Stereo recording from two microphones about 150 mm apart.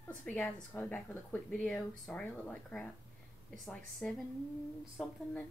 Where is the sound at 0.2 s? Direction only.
10° left (ahead or behind).